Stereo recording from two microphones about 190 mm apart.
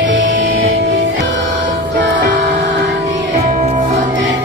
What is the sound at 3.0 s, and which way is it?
Music, 40° right (ahead or behind).